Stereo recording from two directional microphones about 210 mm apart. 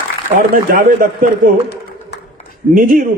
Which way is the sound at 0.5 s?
40° right (ahead or behind).